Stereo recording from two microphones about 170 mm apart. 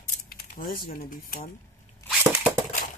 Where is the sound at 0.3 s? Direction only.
60° left (ahead or behind).